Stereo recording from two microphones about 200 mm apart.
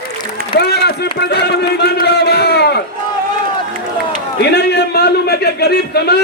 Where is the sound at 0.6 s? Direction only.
55° left (ahead or behind).